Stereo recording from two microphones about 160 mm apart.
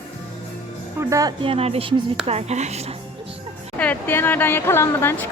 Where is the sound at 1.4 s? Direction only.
40° right (ahead or behind).